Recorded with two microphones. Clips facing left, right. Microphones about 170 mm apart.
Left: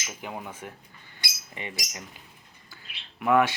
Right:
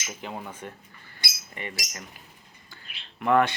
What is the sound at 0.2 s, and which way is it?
Speech, 10° left (ahead or behind).